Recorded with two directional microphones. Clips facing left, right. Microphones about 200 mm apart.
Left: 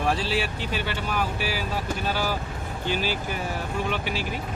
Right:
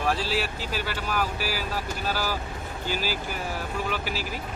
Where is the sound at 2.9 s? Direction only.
5° right (ahead or behind).